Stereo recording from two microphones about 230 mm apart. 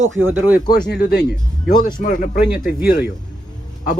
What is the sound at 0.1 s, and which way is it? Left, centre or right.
Speech, right.